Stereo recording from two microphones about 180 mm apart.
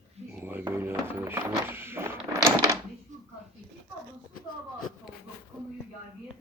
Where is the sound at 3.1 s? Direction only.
40° right (ahead or behind).